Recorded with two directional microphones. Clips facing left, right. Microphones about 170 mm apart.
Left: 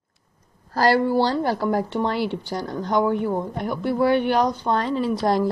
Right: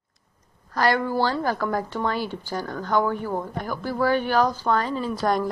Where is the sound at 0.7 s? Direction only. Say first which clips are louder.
Left 4 dB; 35° left (ahead or behind).